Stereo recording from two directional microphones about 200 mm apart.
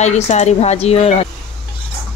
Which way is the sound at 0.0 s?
35° left (ahead or behind).